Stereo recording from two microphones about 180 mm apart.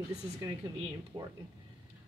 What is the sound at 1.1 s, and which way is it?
Speech, 25° right (ahead or behind).